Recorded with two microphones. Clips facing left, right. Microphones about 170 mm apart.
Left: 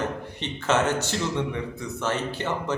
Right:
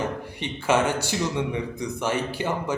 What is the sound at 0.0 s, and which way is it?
Speech, 10° right (ahead or behind).